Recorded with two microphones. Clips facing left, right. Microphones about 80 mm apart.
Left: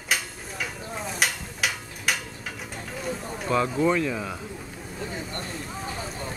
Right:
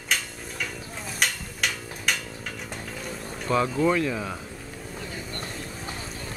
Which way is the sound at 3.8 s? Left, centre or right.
Centre.